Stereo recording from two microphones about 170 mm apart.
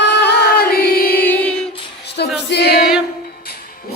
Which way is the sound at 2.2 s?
75° left (ahead or behind).